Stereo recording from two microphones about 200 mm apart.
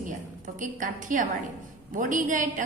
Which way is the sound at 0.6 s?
40° right (ahead or behind).